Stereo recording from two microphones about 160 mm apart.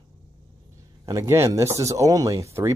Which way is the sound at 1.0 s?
20° right (ahead or behind).